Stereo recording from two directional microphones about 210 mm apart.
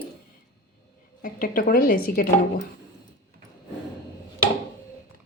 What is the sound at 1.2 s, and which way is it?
Speech, 40° left (ahead or behind).